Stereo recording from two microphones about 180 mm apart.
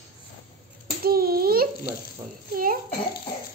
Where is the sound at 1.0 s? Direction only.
55° right (ahead or behind).